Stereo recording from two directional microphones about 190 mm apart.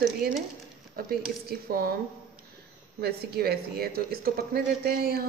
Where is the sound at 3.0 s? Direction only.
55° right (ahead or behind).